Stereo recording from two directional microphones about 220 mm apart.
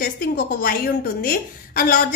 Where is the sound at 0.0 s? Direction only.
40° left (ahead or behind).